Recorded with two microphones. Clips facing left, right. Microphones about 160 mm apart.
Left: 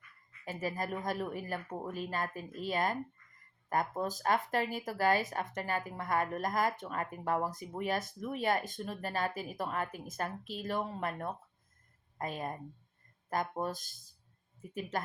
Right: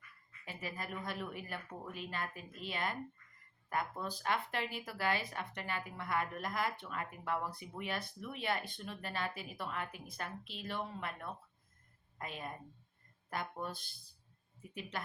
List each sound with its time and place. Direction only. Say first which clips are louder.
0.4 s a woman's voice: left 8 dB; 40° left (ahead or behind)